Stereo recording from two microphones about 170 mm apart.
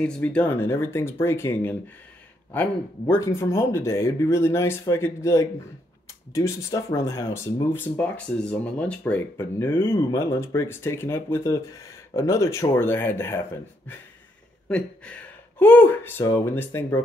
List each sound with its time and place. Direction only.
0.0 s speech: 5° left (ahead or behind)